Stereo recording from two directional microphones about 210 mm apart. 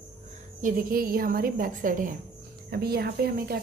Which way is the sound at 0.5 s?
40° right (ahead or behind).